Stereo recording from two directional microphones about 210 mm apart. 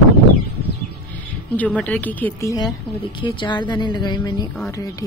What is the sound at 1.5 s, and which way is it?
Speech, 5° left (ahead or behind).